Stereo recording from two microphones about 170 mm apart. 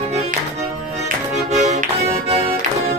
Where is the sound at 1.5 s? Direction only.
40° right (ahead or behind).